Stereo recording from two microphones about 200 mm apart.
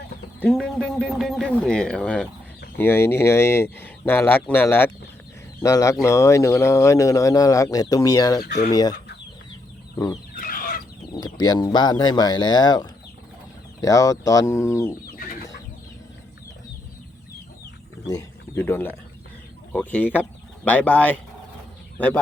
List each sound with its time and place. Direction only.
0.3 s a man's voice: 5° left (ahead or behind)
8.4 s speech: 55° left (ahead or behind)
8.7 s speech: 20° left (ahead or behind)
9.9 s chicken: 15° left (ahead or behind)
10.3 s chicken: 45° left (ahead or behind)
11.1 s speech: 20° left (ahead or behind)
18.1 s a man's voice: 15° left (ahead or behind)